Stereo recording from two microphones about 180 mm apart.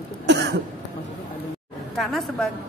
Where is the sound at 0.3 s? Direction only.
70° right (ahead or behind).